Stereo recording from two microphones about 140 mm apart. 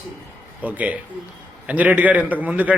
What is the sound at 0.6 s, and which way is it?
A man's voice, 10° right (ahead or behind).